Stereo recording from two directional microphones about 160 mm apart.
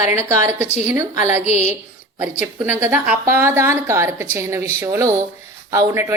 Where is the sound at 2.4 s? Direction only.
15° right (ahead or behind).